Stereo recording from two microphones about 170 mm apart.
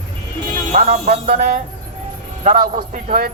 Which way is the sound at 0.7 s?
40° right (ahead or behind).